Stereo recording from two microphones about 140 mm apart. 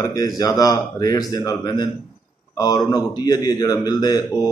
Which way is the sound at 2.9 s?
25° left (ahead or behind).